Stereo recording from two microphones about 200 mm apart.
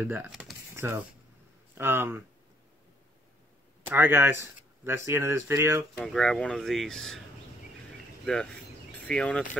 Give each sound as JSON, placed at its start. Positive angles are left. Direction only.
{"t": 0.0, "sound": "speech", "side_deg": -10}
{"t": 3.8, "sound": "speech", "side_deg": -10}
{"t": 5.9, "sound": "speech", "side_deg": 5}
{"t": 8.9, "sound": "speech", "side_deg": 5}